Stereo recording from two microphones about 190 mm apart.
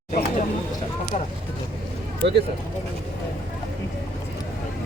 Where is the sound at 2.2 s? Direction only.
65° right (ahead or behind).